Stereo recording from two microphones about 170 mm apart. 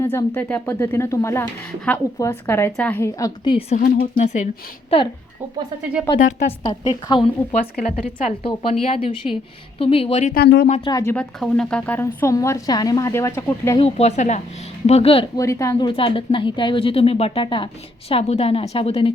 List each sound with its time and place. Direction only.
0.0 s a woman's voice: 15° left (ahead or behind)
3.8 s speech: 55° left (ahead or behind)
4.2 s a woman's voice: 45° left (ahead or behind)
6.1 s a woman's voice: 20° left (ahead or behind)
7.5 s a woman's voice: 45° left (ahead or behind)
10.3 s speech: 75° left (ahead or behind)
10.8 s a woman's voice: 20° left (ahead or behind)
13.7 s a woman's voice: 35° left (ahead or behind)
15.4 s a woman's voice: 20° left (ahead or behind)
15.9 s a woman's voice: 30° left (ahead or behind)